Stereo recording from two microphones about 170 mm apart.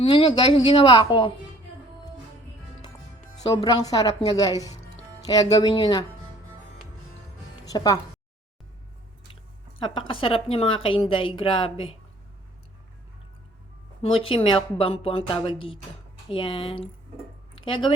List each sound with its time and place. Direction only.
0.0 s a woman's voice: 30° left (ahead or behind)
3.4 s a woman's voice: 20° left (ahead or behind)
7.6 s music: 20° left (ahead or behind)
9.7 s a woman's voice: 30° left (ahead or behind)
14.0 s a woman's voice: 35° left (ahead or behind)
17.5 s a sound: 30° left (ahead or behind)